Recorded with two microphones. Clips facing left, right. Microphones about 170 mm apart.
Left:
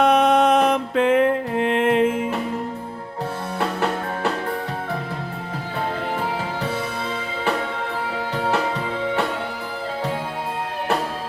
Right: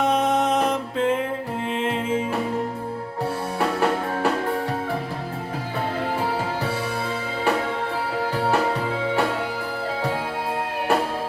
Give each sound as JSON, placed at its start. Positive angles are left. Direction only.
{"t": 0.0, "sound": "music", "side_deg": 65}
{"t": 3.6, "sound": "music", "side_deg": -10}